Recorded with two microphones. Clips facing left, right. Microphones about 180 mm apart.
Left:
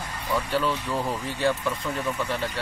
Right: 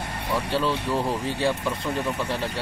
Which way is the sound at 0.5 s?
30° right (ahead or behind).